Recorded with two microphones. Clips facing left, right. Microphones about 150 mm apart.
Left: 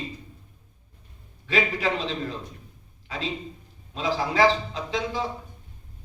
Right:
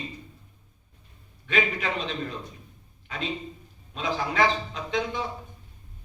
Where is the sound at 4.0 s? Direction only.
30° left (ahead or behind).